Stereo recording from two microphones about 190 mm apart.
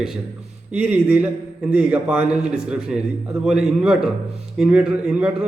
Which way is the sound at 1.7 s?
5° right (ahead or behind).